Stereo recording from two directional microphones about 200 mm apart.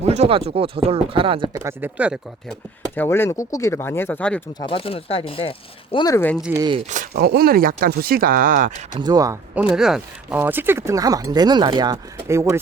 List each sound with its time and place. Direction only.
0.0 s speech: 30° right (ahead or behind)
1.5 s speech: 10° right (ahead or behind)
2.9 s speech: 10° left (ahead or behind)
4.6 s speech: 25° left (ahead or behind)
6.1 s speech: 10° left (ahead or behind)
6.6 s speech: 25° right (ahead or behind)
6.9 s speech: 45° right (ahead or behind)
9.0 s speech: 20° right (ahead or behind)
9.7 s speech: 5° right (ahead or behind)